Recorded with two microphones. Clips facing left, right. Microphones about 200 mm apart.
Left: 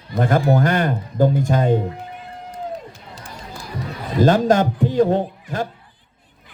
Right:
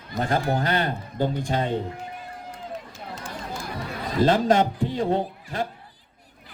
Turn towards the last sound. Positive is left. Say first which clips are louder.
# left 4 dB
turn(degrees=45)  # may be behind; listen again after turning